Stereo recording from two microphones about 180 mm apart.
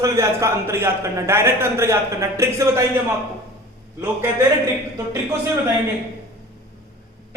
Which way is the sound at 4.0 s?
15° right (ahead or behind).